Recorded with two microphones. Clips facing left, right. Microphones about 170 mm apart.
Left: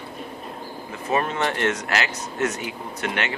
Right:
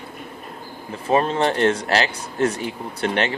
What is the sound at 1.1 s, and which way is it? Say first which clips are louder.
Speech: right 5 dB; 30° right (ahead or behind).